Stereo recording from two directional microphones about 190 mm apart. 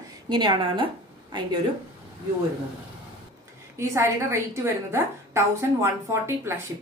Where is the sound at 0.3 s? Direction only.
25° right (ahead or behind).